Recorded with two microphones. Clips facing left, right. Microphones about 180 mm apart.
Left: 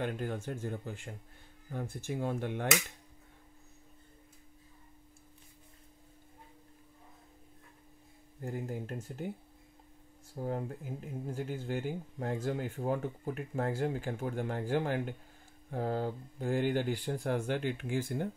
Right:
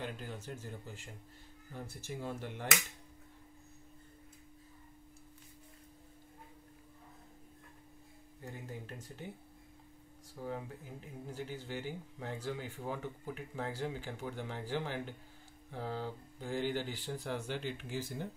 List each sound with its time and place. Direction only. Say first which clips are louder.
0.0 s speech: left 8 dB; 55° left (ahead or behind)
8.5 s speech: left 8 dB; 45° left (ahead or behind)
10.3 s speech: left 5 dB; 45° left (ahead or behind)